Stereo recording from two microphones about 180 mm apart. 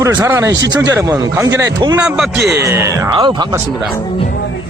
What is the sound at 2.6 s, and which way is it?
A man's voice, 15° right (ahead or behind).